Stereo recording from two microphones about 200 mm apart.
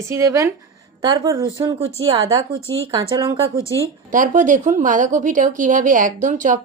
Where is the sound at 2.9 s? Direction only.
15° right (ahead or behind).